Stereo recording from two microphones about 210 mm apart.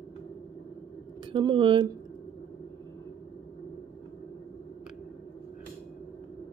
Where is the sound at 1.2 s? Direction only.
20° right (ahead or behind).